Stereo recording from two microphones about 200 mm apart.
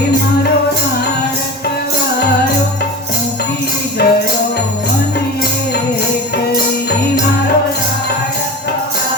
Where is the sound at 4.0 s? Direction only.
55° left (ahead or behind).